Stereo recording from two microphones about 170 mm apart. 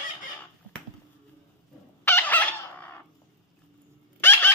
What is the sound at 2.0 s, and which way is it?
Chicken, 10° left (ahead or behind).